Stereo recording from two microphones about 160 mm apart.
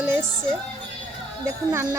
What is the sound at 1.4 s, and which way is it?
Speech, 15° right (ahead or behind).